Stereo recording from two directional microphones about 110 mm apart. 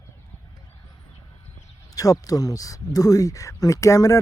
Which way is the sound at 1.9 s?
30° left (ahead or behind).